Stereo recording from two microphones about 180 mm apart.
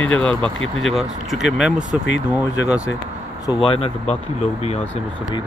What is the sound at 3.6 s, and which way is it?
Speech, 30° left (ahead or behind).